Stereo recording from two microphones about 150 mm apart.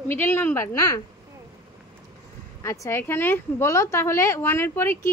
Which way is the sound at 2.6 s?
20° left (ahead or behind).